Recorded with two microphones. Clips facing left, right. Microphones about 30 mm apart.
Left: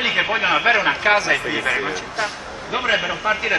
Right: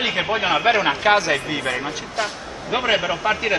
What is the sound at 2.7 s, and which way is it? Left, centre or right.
Speech, centre.